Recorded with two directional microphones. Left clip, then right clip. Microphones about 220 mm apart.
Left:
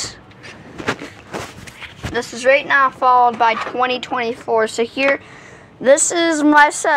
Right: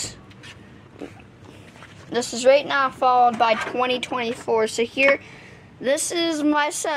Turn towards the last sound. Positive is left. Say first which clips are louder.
# left 10 dB
turn(degrees=15)  # may be behind; listen again after turning